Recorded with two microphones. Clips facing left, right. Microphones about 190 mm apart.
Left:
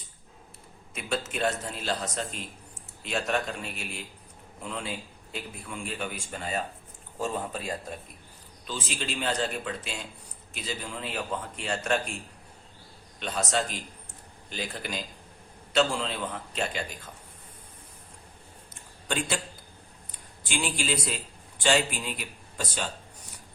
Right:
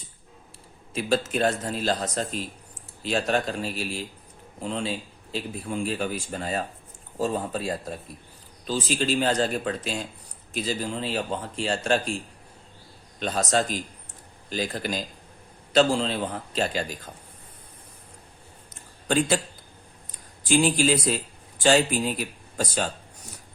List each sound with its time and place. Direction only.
0.9 s a man's voice: 35° right (ahead or behind)
19.0 s a man's voice: 40° right (ahead or behind)
20.5 s a man's voice: 40° right (ahead or behind)